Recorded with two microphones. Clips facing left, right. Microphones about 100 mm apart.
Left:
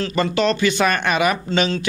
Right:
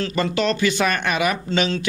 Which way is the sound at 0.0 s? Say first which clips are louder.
Left 2 dB; 35° left (ahead or behind).